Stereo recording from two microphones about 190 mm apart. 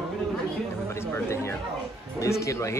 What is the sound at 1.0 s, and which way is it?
Speech, 15° left (ahead or behind).